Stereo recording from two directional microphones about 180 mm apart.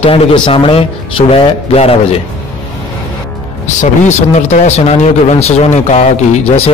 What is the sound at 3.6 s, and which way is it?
A man's voice, 40° left (ahead or behind).